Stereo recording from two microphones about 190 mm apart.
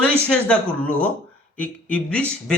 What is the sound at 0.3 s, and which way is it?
Speech, 5° left (ahead or behind).